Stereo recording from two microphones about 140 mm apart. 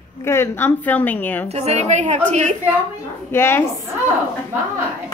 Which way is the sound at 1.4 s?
50° right (ahead or behind).